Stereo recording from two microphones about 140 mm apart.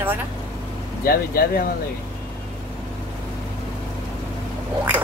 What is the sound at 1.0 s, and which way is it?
Speech, 90° left.